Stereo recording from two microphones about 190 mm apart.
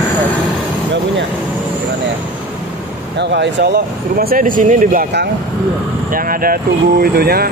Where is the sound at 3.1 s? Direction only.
65° right (ahead or behind).